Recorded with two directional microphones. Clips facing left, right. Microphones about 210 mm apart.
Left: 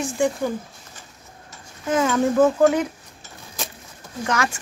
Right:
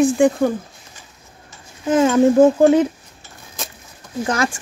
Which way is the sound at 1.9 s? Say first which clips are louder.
Right 6 dB; 25° right (ahead or behind).